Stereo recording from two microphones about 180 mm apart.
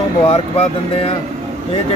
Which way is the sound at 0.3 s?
35° left (ahead or behind).